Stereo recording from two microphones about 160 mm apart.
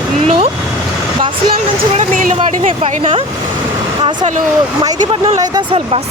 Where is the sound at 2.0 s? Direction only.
50° right (ahead or behind).